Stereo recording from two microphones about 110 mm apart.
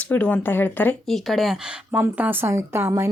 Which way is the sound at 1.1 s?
Centre (ahead or behind).